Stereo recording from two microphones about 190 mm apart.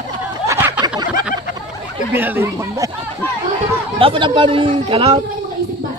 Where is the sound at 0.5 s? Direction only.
15° right (ahead or behind).